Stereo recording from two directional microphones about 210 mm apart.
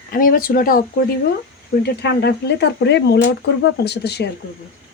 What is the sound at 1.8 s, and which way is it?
Speech, 55° left (ahead or behind).